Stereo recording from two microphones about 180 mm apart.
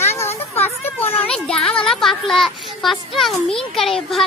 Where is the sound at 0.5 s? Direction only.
10° left (ahead or behind).